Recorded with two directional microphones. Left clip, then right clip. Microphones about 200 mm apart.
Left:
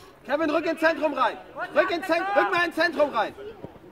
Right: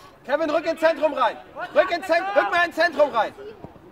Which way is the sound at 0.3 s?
45° right (ahead or behind).